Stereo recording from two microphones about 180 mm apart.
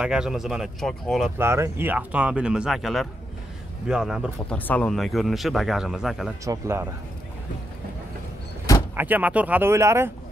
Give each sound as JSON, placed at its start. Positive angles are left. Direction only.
{"t": 0.0, "sound": "speech", "side_deg": -5}
{"t": 1.4, "sound": "speech", "side_deg": -15}
{"t": 4.6, "sound": "speech", "side_deg": 10}
{"t": 6.4, "sound": "speech", "side_deg": -15}
{"t": 8.9, "sound": "speech", "side_deg": -10}